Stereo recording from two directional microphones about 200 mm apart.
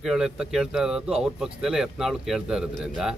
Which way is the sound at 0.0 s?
Centre (ahead or behind).